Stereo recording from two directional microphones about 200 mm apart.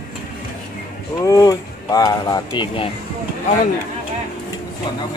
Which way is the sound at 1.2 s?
15° left (ahead or behind).